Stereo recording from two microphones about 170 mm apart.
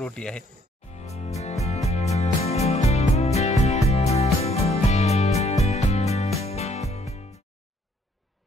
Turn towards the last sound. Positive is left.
turn(degrees=40)  # may be behind; listen again after turning